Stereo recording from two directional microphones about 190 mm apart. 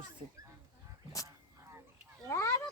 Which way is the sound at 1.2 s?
20° left (ahead or behind).